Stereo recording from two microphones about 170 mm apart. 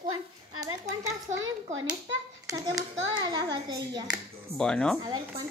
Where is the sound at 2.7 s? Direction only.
25° right (ahead or behind).